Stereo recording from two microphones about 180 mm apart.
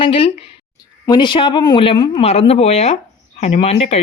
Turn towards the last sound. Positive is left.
turn(degrees=35)  # may be behind; listen again after turning